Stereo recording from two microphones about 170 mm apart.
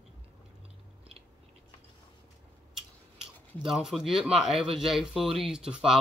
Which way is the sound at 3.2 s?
5° right (ahead or behind).